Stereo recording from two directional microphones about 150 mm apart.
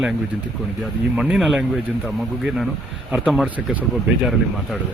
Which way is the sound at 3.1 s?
Centre (ahead or behind).